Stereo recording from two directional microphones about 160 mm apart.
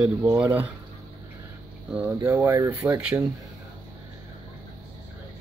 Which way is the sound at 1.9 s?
10° right (ahead or behind).